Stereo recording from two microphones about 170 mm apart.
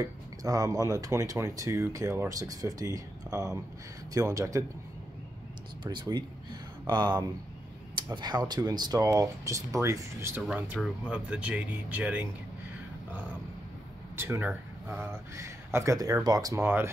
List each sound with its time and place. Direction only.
0.0 s speech: 20° right (ahead or behind)
5.9 s speech: 25° right (ahead or behind)
10.4 s speech: centre (ahead or behind)
14.1 s speech: 15° right (ahead or behind)